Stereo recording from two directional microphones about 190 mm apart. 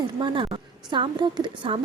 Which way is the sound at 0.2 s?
25° right (ahead or behind).